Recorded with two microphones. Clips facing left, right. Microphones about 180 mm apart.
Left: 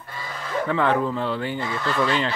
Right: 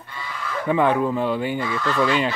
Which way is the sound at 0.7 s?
15° right (ahead or behind).